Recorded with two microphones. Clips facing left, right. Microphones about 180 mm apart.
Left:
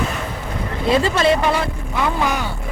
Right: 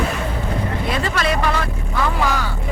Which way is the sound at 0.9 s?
25° left (ahead or behind).